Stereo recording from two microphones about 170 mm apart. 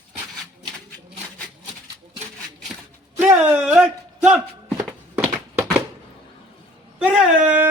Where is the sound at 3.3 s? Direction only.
15° right (ahead or behind).